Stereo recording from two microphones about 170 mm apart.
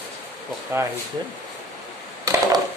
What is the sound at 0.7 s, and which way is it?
Speech, 15° right (ahead or behind).